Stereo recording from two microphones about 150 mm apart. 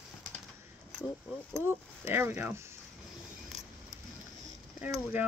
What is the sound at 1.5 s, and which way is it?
Speech, 15° right (ahead or behind).